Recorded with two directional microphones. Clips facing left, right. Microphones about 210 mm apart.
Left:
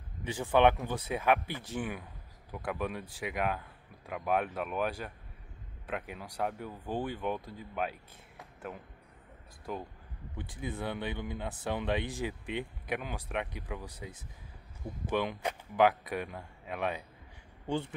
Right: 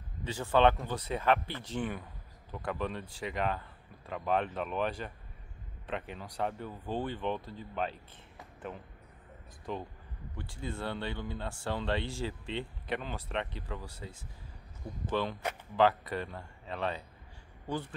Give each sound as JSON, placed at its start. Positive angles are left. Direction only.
{"t": 0.2, "sound": "speech", "side_deg": 15}
{"t": 10.3, "sound": "speech", "side_deg": 20}
{"t": 17.6, "sound": "speech", "side_deg": 25}